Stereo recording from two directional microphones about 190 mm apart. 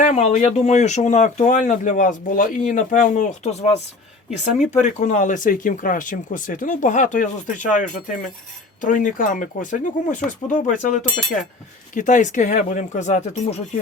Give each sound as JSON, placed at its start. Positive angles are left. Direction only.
{"t": 0.0, "sound": "speech", "side_deg": 35}